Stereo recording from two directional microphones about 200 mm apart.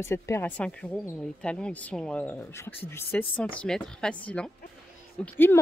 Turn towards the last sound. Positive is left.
turn(degrees=10)  # may be behind; listen again after turning